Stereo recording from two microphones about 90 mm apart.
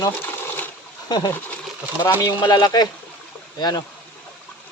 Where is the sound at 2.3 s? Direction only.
55° left (ahead or behind).